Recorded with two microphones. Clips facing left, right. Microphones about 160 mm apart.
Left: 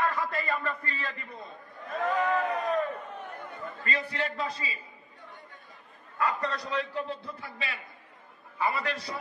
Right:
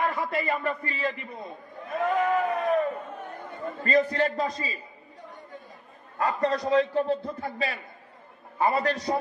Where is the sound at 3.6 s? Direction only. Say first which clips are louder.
Right 11 dB; 40° right (ahead or behind).